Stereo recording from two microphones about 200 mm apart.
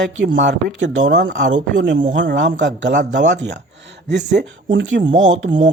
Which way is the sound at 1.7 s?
65° right (ahead or behind).